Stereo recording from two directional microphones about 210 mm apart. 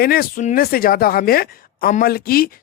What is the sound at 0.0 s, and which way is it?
Speech, 45° left (ahead or behind).